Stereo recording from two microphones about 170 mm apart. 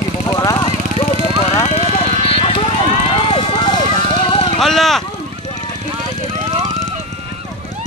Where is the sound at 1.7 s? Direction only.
40° left (ahead or behind).